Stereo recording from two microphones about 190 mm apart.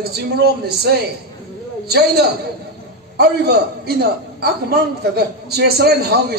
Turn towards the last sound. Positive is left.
turn(degrees=-55)  # may be behind; listen again after turning